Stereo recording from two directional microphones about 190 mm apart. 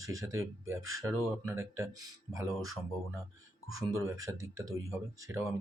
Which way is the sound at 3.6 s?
15° right (ahead or behind).